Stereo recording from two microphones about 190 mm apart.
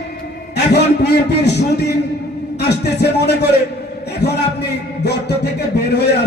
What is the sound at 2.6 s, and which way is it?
Music, 60° left (ahead or behind).